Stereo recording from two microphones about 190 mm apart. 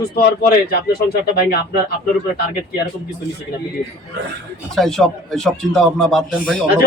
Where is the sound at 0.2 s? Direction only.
55° left (ahead or behind).